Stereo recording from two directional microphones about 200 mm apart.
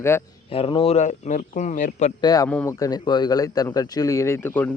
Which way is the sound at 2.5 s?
5° left (ahead or behind).